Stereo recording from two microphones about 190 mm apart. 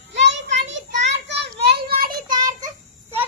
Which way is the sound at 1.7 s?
55° right (ahead or behind).